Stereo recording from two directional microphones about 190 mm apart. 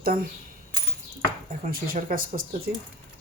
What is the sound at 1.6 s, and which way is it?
Speech, 50° right (ahead or behind).